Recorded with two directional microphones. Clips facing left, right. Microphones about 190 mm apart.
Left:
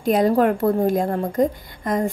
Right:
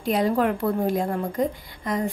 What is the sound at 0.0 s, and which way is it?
A woman's voice, 45° left (ahead or behind).